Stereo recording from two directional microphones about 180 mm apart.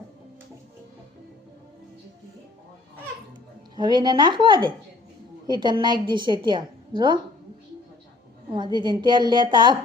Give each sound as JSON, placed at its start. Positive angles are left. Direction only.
{"t": 3.8, "sound": "a woman's voice", "side_deg": -25}
{"t": 8.4, "sound": "a woman's voice", "side_deg": -25}